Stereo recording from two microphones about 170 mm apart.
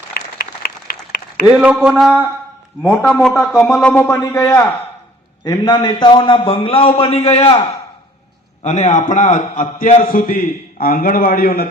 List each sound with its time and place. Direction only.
0.1 s applause: 65° left (ahead or behind)
1.5 s speech: 5° right (ahead or behind)
2.8 s a man's voice: 15° left (ahead or behind)
3.2 s a man's voice: centre (ahead or behind); by 7.6 s 35° left (ahead or behind)
8.6 s a man's voice: 45° left (ahead or behind); by 11.7 s 60° left (ahead or behind)